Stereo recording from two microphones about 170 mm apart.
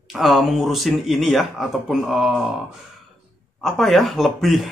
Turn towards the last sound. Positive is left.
turn(degrees=0)  # may be behind; listen again after turning